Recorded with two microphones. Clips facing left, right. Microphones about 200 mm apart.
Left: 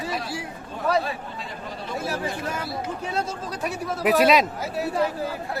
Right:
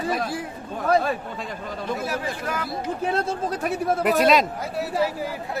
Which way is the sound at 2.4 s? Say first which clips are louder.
Right 1 dB; 25° left (ahead or behind).